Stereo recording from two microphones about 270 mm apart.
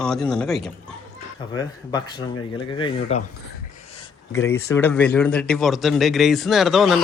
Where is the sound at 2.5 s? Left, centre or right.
Centre.